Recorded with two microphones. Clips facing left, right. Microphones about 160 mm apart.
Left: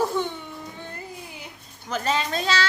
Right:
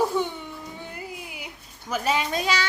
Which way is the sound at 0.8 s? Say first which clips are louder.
Right 1 dB; 10° right (ahead or behind).